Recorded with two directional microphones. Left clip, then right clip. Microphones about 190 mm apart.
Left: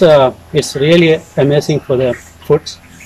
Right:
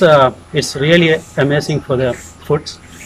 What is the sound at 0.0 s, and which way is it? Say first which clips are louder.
Speech: left 1 dB; 15° left (ahead or behind).